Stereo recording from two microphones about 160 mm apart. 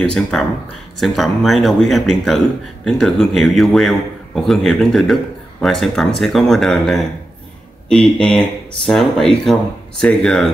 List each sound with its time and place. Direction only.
0.1 s speech: 5° left (ahead or behind)